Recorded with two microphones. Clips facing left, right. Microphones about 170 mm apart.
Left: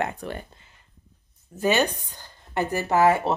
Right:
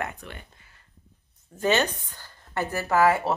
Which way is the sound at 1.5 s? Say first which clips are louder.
Left 1 dB; 10° left (ahead or behind).